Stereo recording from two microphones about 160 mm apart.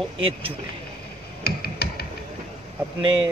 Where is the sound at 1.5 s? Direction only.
85° left.